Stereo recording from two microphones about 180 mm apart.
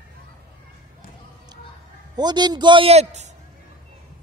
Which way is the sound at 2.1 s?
25° right (ahead or behind).